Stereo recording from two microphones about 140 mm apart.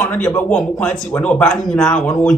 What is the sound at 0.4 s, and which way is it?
Speech, 10° left (ahead or behind).